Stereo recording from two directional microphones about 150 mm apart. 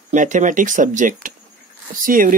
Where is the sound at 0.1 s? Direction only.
55° right (ahead or behind).